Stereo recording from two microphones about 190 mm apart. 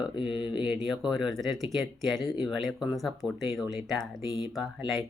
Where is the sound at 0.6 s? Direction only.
5° right (ahead or behind).